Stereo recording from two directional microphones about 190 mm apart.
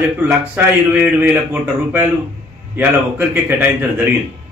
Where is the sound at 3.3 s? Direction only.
10° right (ahead or behind).